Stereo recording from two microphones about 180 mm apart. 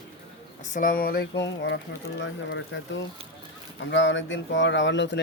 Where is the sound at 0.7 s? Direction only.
50° left (ahead or behind); by 1.8 s 75° left (ahead or behind).